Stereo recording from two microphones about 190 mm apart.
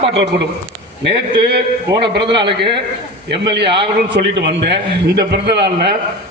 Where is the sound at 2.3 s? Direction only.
25° right (ahead or behind).